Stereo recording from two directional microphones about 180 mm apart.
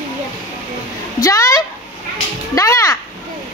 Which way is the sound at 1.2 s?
20° left (ahead or behind).